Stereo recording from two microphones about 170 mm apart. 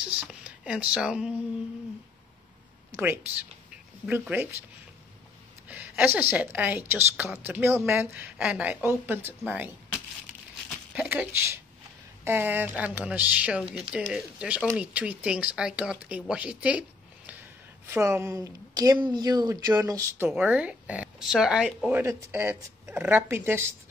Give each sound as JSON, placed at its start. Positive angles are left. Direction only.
{"t": 0.0, "sound": "speech", "side_deg": -5}
{"t": 3.0, "sound": "speech", "side_deg": -10}
{"t": 5.7, "sound": "a woman's voice", "side_deg": -10}
{"t": 11.0, "sound": "speech", "side_deg": -10}
{"t": 17.8, "sound": "speech", "side_deg": -15}